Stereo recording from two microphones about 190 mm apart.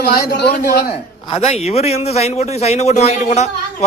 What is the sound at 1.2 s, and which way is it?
A man's voice, 30° left (ahead or behind).